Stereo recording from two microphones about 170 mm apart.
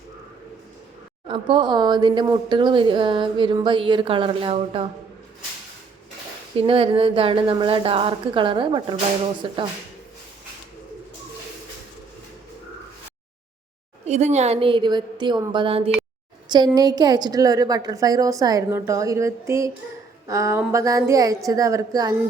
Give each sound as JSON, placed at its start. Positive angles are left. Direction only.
{"t": 1.3, "sound": "speech", "side_deg": -30}
{"t": 6.6, "sound": "a woman's voice", "side_deg": -30}
{"t": 14.1, "sound": "a woman's voice", "side_deg": -40}